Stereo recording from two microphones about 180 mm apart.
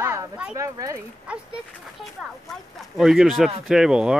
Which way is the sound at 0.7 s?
15° right (ahead or behind).